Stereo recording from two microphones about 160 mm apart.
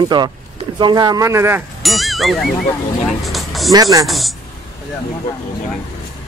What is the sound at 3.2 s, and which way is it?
Music, centre (ahead or behind).